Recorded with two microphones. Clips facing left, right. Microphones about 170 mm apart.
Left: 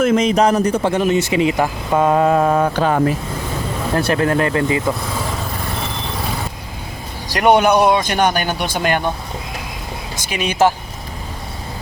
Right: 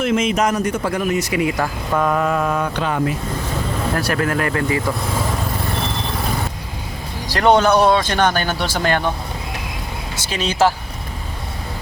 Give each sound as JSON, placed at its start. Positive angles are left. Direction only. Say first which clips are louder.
{"t": 0.0, "sound": "a man's voice", "louder": "left 4 dB", "side_deg": 40}
{"t": 3.9, "sound": "speech", "louder": "left 5 dB", "side_deg": 25}
{"t": 7.3, "sound": "speech", "louder": "left 1 dB", "side_deg": 15}
{"t": 10.2, "sound": "speech", "louder": "left 1 dB", "side_deg": 15}